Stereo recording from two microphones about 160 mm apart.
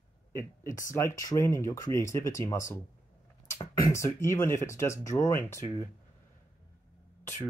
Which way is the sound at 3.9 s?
15° left (ahead or behind).